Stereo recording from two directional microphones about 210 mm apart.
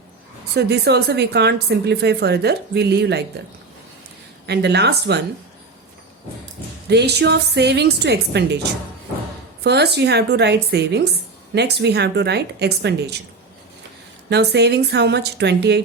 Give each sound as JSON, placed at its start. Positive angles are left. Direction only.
{"t": 0.5, "sound": "a woman's voice", "side_deg": -50}
{"t": 4.4, "sound": "a woman's voice", "side_deg": -55}
{"t": 6.8, "sound": "a woman's voice", "side_deg": -50}
{"t": 9.6, "sound": "a woman's voice", "side_deg": -55}
{"t": 14.3, "sound": "a woman's voice", "side_deg": -55}